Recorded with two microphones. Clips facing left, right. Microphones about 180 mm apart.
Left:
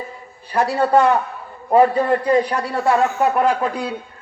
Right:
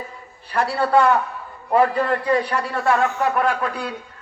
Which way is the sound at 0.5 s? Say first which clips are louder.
Left 2 dB; 20° left (ahead or behind).